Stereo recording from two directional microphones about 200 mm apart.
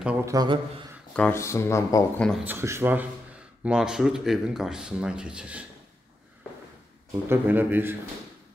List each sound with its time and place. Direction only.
0.0 s a man's voice: 15° right (ahead or behind)
1.1 s speech: 10° left (ahead or behind)
2.4 s a man's voice: 10° right (ahead or behind)
7.1 s a man's voice: 10° right (ahead or behind)